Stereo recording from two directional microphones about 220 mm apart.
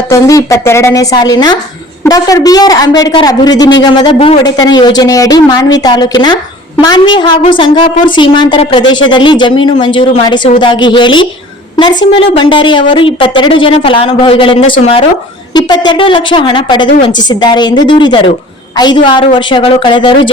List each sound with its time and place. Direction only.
0.1 s a woman's voice: 15° left (ahead or behind)